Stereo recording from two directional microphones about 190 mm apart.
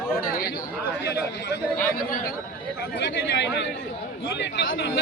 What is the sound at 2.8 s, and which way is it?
Speech, 65° left (ahead or behind).